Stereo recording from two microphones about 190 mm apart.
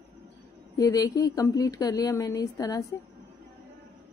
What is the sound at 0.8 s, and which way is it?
A woman's voice, 20° left (ahead or behind).